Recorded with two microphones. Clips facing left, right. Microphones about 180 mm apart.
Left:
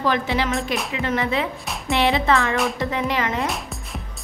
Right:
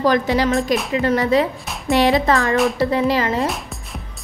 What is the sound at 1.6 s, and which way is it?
Music, centre (ahead or behind).